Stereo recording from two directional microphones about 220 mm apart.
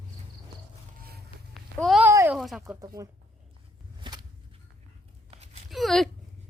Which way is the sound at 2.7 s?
15° right (ahead or behind).